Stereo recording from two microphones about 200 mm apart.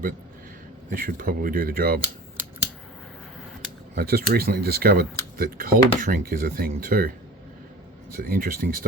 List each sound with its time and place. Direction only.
0.9 s speech: 45° right (ahead or behind)
3.9 s speech: 50° right (ahead or behind)
8.1 s speech: 45° right (ahead or behind)